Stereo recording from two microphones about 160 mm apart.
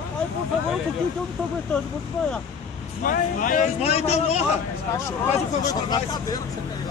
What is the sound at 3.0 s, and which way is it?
Speech, 60° left (ahead or behind).